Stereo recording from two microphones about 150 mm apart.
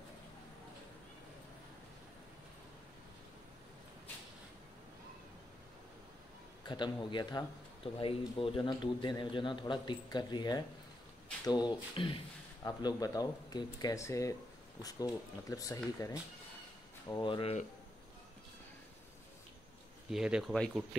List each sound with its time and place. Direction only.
6.6 s speech: 30° left (ahead or behind)
17.1 s speech: 35° left (ahead or behind)
20.1 s speech: 5° right (ahead or behind)